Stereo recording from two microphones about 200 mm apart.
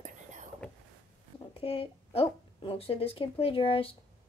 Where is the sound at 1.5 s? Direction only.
30° left (ahead or behind).